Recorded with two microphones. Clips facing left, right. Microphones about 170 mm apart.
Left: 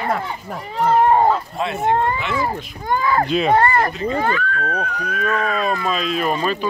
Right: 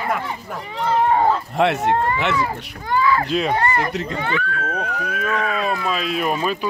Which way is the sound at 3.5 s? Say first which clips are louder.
Left 4 dB; 50° left (ahead or behind).